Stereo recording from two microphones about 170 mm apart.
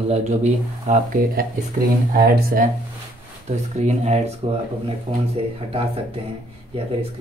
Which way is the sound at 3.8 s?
40° right (ahead or behind).